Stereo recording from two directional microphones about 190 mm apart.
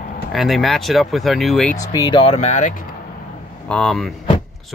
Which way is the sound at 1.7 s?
20° left (ahead or behind).